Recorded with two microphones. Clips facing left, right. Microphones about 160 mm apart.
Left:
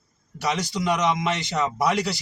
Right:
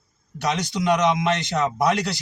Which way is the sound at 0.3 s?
5° left (ahead or behind).